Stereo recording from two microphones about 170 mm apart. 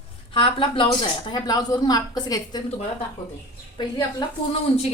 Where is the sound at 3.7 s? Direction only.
25° left (ahead or behind).